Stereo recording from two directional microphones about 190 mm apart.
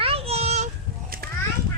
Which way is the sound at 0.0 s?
30° right (ahead or behind).